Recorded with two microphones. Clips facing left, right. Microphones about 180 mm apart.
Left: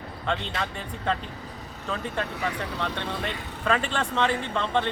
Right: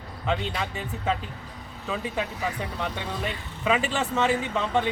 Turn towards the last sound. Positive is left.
turn(degrees=-5)  # may be behind; listen again after turning